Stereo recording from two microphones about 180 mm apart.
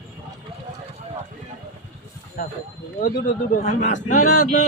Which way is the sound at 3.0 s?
50° left (ahead or behind).